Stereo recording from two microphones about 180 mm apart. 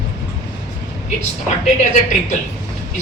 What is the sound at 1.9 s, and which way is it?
Speech, 45° left (ahead or behind).